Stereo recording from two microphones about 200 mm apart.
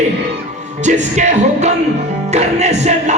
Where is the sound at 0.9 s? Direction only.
35° right (ahead or behind).